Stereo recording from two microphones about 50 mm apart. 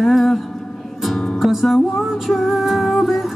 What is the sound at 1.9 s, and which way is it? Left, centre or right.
Music, centre.